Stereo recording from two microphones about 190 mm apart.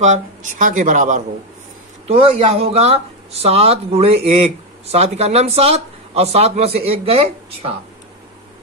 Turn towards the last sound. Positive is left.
turn(degrees=-30)  # may be behind; listen again after turning